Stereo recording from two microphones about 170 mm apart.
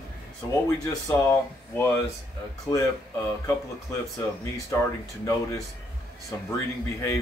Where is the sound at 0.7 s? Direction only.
20° left (ahead or behind).